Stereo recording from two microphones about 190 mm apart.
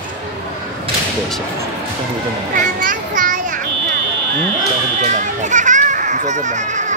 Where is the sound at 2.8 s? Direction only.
45° right (ahead or behind).